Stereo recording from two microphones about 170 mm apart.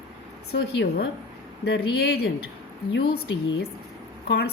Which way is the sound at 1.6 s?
75° left (ahead or behind).